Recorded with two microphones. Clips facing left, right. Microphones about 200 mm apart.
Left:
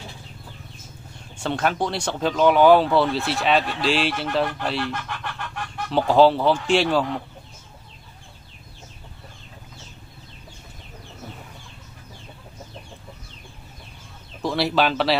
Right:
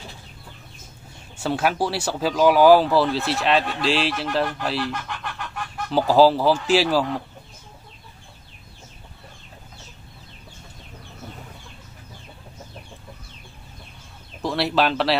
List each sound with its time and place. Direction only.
1.4 s speech: 5° right (ahead or behind)
14.4 s speech: centre (ahead or behind)